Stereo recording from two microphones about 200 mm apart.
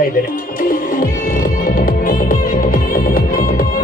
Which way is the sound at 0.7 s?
45° left (ahead or behind).